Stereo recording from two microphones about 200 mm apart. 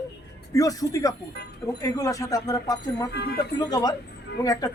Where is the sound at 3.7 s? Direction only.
20° left (ahead or behind).